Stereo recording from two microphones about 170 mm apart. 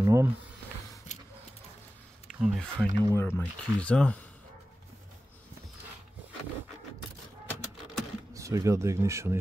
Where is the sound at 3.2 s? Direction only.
10° left (ahead or behind).